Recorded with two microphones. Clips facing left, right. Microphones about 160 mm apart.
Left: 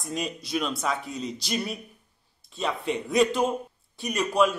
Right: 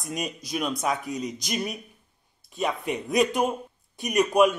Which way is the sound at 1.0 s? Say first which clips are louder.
Right 3 dB; 30° left (ahead or behind).